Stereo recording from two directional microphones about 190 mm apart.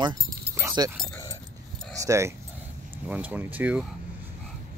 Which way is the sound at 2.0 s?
15° right (ahead or behind).